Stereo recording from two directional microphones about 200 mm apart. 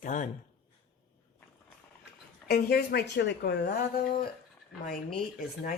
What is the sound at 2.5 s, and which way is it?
Speech, 50° left (ahead or behind).